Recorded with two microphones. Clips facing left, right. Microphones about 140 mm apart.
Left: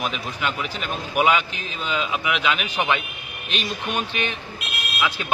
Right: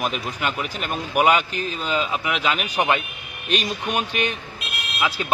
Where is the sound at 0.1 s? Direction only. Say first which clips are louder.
Right 1 dB; 45° right (ahead or behind).